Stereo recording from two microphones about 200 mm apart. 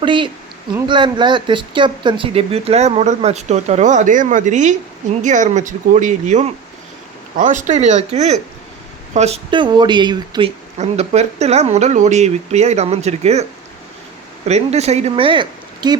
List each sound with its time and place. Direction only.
0.0 s speech: 25° right (ahead or behind)
10.8 s speech: 35° right (ahead or behind)
14.4 s speech: 35° right (ahead or behind)